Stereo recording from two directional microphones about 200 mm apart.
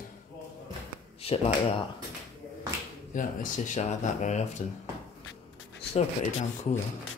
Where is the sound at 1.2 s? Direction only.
30° left (ahead or behind).